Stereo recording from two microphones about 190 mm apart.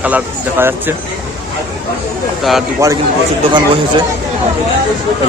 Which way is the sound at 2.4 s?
Centre (ahead or behind).